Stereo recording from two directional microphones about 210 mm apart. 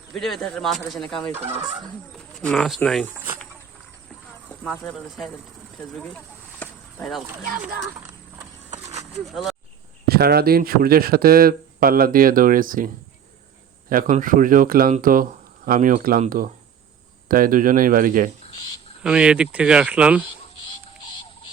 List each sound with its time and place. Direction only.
0.1 s speech: centre (ahead or behind)
4.4 s speech: 5° left (ahead or behind)
6.0 s a sound: 5° left (ahead or behind)
8.7 s a sound: 30° right (ahead or behind)
9.2 s speech: centre (ahead or behind)
10.1 s speech: 50° right (ahead or behind)
13.9 s speech: 40° right (ahead or behind)
19.0 s speech: 5° right (ahead or behind)